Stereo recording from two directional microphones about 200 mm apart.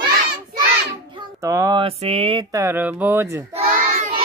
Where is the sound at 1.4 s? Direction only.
15° right (ahead or behind).